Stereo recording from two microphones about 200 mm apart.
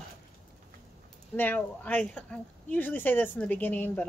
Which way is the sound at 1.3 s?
10° left (ahead or behind).